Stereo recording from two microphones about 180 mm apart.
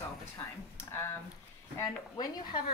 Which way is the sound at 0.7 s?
15° left (ahead or behind).